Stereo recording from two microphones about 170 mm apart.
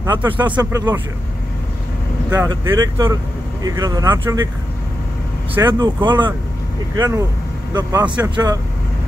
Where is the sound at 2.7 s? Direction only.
20° right (ahead or behind).